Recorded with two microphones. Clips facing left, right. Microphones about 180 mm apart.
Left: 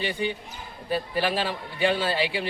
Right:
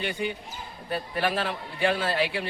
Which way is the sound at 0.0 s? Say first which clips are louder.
Left 2 dB; 30° left (ahead or behind).